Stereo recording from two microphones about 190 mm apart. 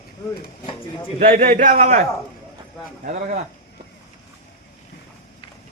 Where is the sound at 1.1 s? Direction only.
45° right (ahead or behind).